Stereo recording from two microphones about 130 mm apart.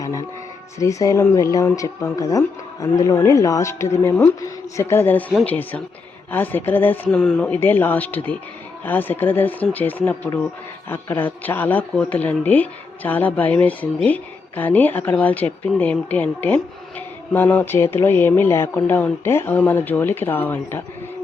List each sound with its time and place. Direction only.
0.8 s a woman's voice: 25° left (ahead or behind)